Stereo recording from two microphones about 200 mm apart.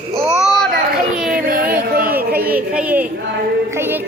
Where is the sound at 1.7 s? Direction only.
45° right (ahead or behind).